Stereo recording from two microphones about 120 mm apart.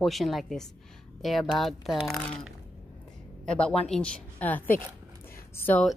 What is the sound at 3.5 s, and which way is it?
Speech, 5° left (ahead or behind).